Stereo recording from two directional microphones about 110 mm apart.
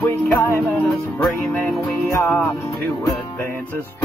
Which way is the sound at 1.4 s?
15° left (ahead or behind).